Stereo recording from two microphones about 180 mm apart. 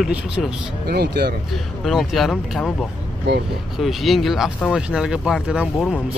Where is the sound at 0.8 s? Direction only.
60° right (ahead or behind).